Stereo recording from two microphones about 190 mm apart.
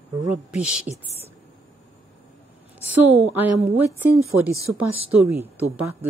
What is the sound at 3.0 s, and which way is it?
Speech, 35° right (ahead or behind).